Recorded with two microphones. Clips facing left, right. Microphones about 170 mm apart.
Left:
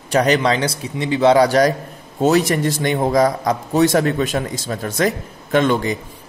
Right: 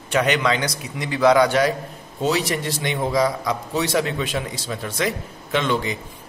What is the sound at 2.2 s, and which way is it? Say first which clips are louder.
A man's voice: left 7 dB; 50° left (ahead or behind).